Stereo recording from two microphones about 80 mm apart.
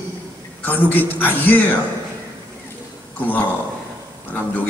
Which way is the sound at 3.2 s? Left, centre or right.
Left.